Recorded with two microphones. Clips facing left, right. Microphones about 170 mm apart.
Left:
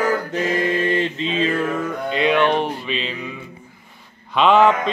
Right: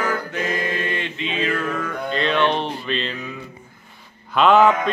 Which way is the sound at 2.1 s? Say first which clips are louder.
Left 3 dB; 10° left (ahead or behind).